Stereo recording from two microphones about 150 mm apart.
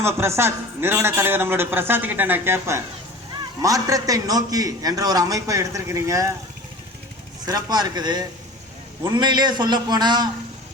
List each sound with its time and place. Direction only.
0.0 s a man's voice: 15° right (ahead or behind)
7.4 s a man's voice: 25° right (ahead or behind)